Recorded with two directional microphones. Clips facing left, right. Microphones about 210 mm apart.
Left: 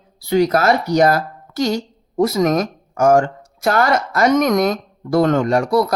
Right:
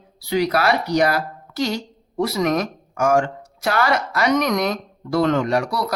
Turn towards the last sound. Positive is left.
turn(degrees=45)  # may be behind; listen again after turning